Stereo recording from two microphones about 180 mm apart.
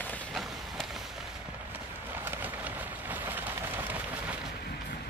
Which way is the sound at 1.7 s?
10° right (ahead or behind).